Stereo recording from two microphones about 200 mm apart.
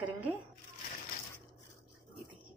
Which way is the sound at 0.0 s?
5° right (ahead or behind).